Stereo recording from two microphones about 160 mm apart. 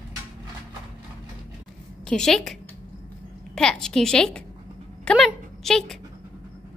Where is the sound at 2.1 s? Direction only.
Centre (ahead or behind).